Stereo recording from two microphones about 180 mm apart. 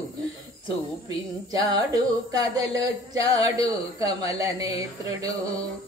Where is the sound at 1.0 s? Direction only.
20° right (ahead or behind).